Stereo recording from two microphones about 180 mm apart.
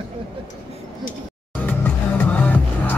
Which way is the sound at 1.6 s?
10° left (ahead or behind).